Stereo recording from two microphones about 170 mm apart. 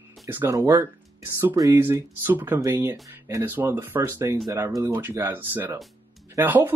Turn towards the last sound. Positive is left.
turn(degrees=-10)  # may be behind; listen again after turning